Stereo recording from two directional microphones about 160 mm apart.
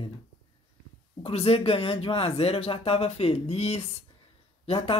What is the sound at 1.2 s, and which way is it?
A woman's voice, 35° left (ahead or behind).